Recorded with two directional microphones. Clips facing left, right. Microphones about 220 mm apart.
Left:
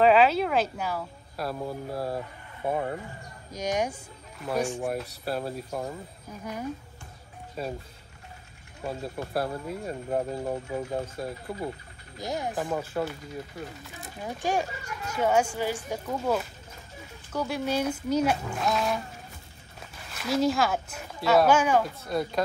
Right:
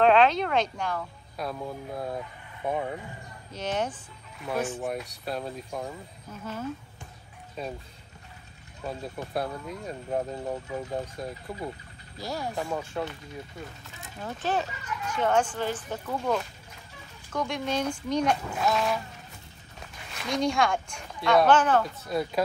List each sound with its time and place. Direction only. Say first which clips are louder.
0.0 s speech: left 1 dB; 5° left (ahead or behind)
4.4 s speech: left 2 dB; centre (ahead or behind); by 6.7 s 15° left (ahead or behind)
7.6 s speech: left 2 dB; 5° left (ahead or behind)
8.8 s speech: left 2 dB; 5° left (ahead or behind)
12.2 s speech: left 2 dB; 20° left (ahead or behind)
14.2 s speech: left 1 dB; 10° left (ahead or behind)
20.1 s speech: left 3 dB; 5° left (ahead or behind)
22.0 s speech: even; centre (ahead or behind)